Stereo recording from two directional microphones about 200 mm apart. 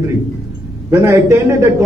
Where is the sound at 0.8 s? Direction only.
15° right (ahead or behind).